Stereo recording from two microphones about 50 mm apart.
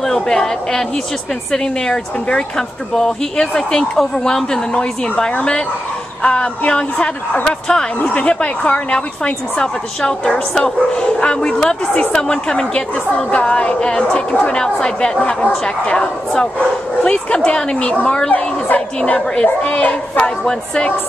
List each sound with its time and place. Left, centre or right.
0.0 s a woman's voice: centre
2.9 s a woman's voice: centre; by 14.6 s left
14.6 s a woman's voice: centre
19.4 s a woman's voice: left
20.2 s a woman's voice: centre